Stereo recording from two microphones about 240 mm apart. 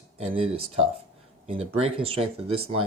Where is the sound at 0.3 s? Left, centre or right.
Right.